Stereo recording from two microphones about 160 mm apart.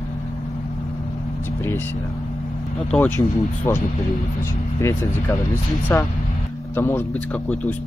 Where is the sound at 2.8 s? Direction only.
5° left (ahead or behind).